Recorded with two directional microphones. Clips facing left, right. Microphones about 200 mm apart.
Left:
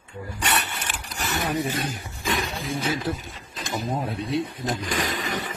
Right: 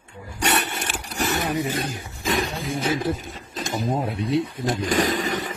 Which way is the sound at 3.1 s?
50° right (ahead or behind).